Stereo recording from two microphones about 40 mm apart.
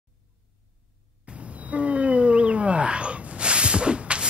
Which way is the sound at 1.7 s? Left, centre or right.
Right.